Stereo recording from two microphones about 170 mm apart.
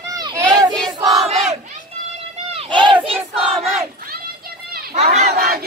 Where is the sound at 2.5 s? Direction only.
30° right (ahead or behind).